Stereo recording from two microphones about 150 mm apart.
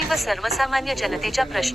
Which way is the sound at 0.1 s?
Centre (ahead or behind).